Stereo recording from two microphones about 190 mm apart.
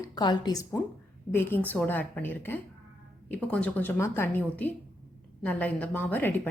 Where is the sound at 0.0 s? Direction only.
20° left (ahead or behind).